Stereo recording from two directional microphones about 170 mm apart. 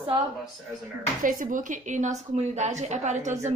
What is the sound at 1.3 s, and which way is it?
A woman's voice, 50° right (ahead or behind).